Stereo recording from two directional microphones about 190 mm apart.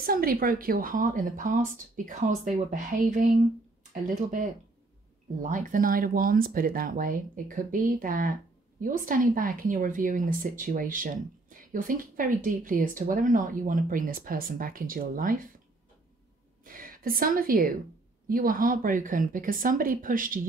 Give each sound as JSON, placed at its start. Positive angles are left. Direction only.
{"t": 0.0, "sound": "speech", "side_deg": -50}
{"t": 16.6, "sound": "a woman's voice", "side_deg": -50}